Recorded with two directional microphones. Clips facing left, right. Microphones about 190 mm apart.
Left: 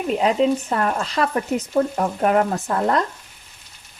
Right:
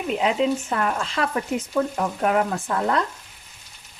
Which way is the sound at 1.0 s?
40° left (ahead or behind).